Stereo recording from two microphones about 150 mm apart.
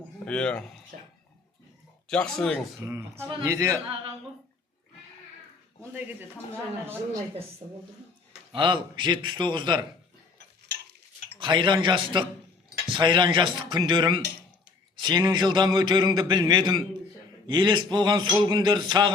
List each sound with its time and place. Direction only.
0.3 s speech: 5° left (ahead or behind)
0.9 s speech: 65° right (ahead or behind)
2.0 s speech: 5° left (ahead or behind)
2.8 s a man's voice: 15° right (ahead or behind)
3.8 s speech: 40° right (ahead or behind)
5.8 s speech: 10° right (ahead or behind)
8.5 s a man's voice: 35° right (ahead or behind)
11.3 s a man's voice: 30° right (ahead or behind)